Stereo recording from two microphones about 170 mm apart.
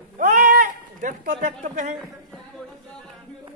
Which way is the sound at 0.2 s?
50° right (ahead or behind).